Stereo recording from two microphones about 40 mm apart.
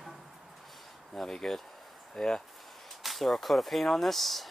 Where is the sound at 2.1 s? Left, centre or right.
Centre.